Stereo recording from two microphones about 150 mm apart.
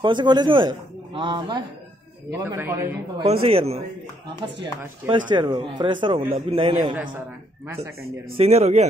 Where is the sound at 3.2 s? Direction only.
40° right (ahead or behind).